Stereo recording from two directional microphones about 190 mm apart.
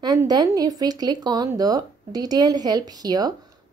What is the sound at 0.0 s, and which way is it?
Speech, 20° right (ahead or behind).